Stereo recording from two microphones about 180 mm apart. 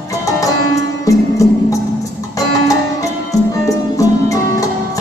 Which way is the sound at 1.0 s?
20° left (ahead or behind).